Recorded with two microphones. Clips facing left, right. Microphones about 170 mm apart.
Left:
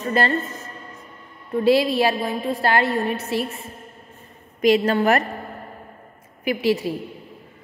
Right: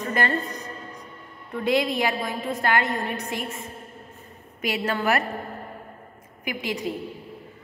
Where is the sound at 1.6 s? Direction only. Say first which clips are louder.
Left 6 dB; 20° right (ahead or behind).